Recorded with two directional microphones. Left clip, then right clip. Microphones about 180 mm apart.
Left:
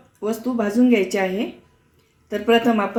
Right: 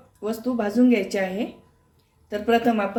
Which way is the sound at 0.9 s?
50° left (ahead or behind).